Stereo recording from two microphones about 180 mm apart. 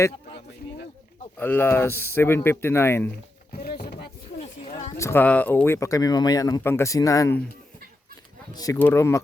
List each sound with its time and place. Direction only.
1.4 s speech: 10° left (ahead or behind)
3.5 s a sound: 60° left (ahead or behind)
4.9 s speech: 15° left (ahead or behind)
8.5 s speech: 15° left (ahead or behind)